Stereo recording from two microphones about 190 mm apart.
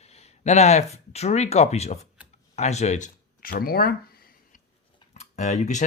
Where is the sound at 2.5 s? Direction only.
35° left (ahead or behind).